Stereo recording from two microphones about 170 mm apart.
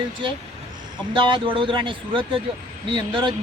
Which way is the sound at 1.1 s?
30° right (ahead or behind).